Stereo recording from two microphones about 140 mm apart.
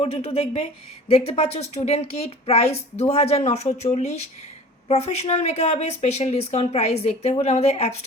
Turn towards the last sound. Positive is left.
turn(degrees=50)  # may be behind; listen again after turning